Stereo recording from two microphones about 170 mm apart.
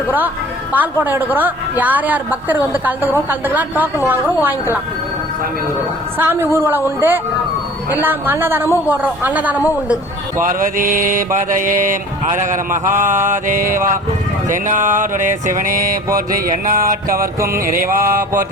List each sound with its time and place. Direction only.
0.7 s a woman's voice: 10° right (ahead or behind)
6.1 s a woman's voice: 15° right (ahead or behind)
10.4 s mantra: 55° right (ahead or behind)